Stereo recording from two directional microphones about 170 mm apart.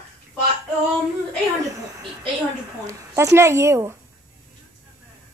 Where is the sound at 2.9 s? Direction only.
15° right (ahead or behind).